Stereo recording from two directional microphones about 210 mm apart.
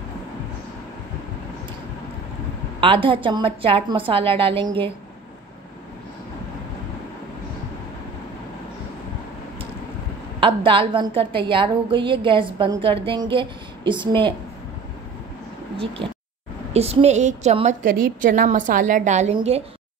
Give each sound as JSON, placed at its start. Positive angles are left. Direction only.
{"t": 2.8, "sound": "a woman's voice", "side_deg": -25}
{"t": 10.4, "sound": "a woman's voice", "side_deg": -25}
{"t": 16.7, "sound": "a woman's voice", "side_deg": -30}